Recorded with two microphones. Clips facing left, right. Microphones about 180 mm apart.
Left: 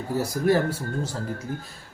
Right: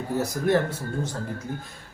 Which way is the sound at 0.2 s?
10° left (ahead or behind).